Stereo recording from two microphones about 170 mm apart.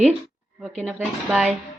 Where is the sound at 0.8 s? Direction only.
Centre (ahead or behind).